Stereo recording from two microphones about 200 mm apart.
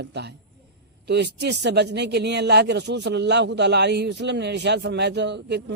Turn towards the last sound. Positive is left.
turn(degrees=-60)  # may be behind; listen again after turning